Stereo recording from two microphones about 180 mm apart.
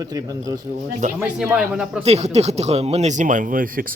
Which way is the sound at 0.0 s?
20° right (ahead or behind).